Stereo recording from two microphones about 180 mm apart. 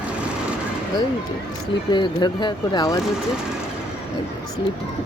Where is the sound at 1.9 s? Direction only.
25° left (ahead or behind).